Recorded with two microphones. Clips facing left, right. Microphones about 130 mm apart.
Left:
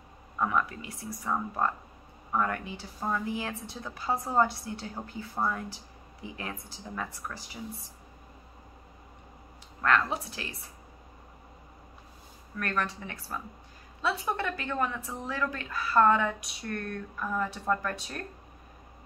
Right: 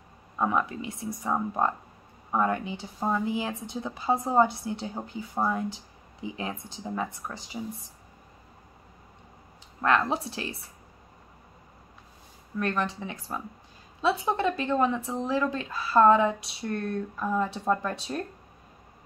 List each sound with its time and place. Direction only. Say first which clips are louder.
0.4 s speech: right 2 dB; 25° right (ahead or behind)
9.8 s speech: right 2 dB; 25° right (ahead or behind)
12.5 s speech: right 4 dB; 25° right (ahead or behind)